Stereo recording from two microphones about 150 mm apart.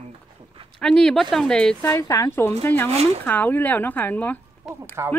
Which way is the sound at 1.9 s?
20° left (ahead or behind).